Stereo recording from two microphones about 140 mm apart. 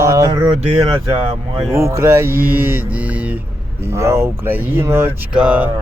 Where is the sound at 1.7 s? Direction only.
20° right (ahead or behind).